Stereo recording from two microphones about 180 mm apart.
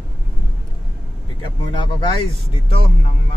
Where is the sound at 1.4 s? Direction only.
25° left (ahead or behind).